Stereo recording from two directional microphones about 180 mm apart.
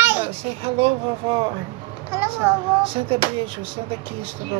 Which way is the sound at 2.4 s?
10° right (ahead or behind).